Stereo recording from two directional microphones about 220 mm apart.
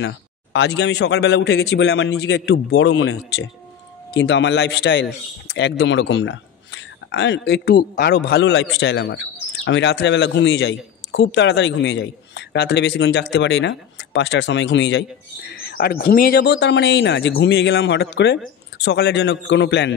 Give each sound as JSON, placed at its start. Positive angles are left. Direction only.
{"t": 0.0, "sound": "speech", "side_deg": 50}